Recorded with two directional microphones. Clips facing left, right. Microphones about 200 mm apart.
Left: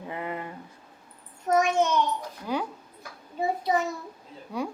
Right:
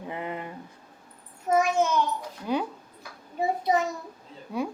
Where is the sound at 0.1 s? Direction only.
20° right (ahead or behind).